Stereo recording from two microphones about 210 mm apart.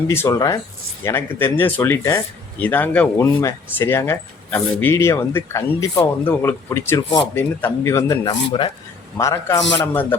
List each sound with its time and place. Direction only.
0.1 s speech: 15° left (ahead or behind)